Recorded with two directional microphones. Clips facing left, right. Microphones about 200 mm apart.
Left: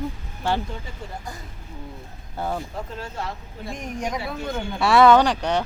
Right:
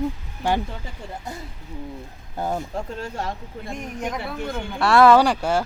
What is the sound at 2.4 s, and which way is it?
Speech, 15° right (ahead or behind).